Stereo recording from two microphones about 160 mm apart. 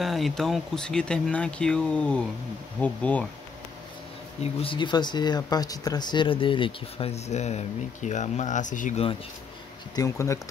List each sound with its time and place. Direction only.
0.0 s speech: centre (ahead or behind)
2.8 s bee: 10° left (ahead or behind)
4.4 s speech: 35° left (ahead or behind); by 9.0 s 50° left (ahead or behind)
9.9 s speech: 20° left (ahead or behind)